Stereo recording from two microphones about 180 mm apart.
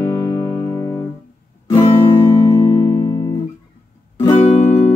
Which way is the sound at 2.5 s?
30° left (ahead or behind).